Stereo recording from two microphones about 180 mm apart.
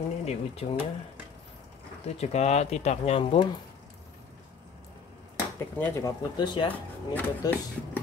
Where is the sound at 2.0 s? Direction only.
35° left (ahead or behind).